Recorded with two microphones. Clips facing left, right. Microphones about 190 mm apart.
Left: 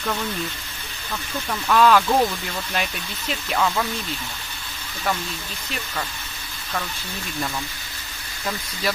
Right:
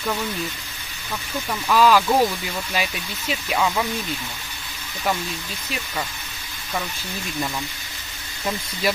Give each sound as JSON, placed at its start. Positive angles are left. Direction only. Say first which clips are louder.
{"t": 1.5, "sound": "speech", "louder": "even", "side_deg": -5}
{"t": 8.8, "sound": "speech", "louder": "right 3 dB", "side_deg": -15}